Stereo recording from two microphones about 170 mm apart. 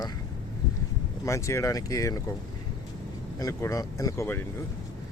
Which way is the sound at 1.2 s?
15° left (ahead or behind).